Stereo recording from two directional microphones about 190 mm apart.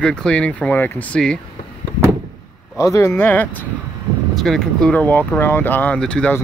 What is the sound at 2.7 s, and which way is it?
Speech, 15° left (ahead or behind).